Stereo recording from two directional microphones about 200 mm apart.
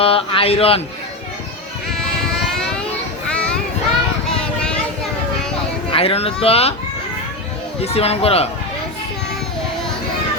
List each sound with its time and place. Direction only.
0.0 s speech: 30° left (ahead or behind)
5.9 s speech: 30° left (ahead or behind)
7.8 s speech: 30° left (ahead or behind)